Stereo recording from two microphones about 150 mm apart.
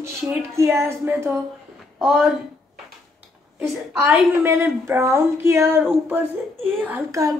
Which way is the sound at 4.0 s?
15° right (ahead or behind).